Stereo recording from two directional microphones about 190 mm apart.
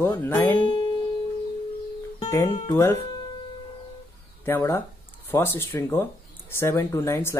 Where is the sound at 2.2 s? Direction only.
15° left (ahead or behind).